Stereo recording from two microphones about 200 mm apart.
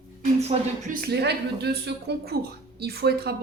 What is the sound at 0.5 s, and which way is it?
Speech, 30° right (ahead or behind).